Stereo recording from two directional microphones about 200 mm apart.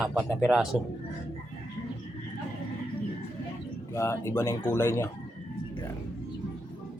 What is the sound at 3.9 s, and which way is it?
Speech, 15° left (ahead or behind).